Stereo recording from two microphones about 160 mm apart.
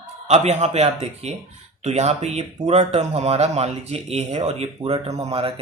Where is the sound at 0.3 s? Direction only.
45° right (ahead or behind).